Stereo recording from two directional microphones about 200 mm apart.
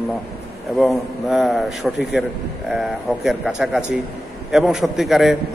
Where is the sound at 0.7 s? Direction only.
Centre (ahead or behind).